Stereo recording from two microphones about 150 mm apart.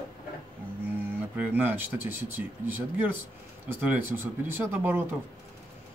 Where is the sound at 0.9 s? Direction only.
10° right (ahead or behind).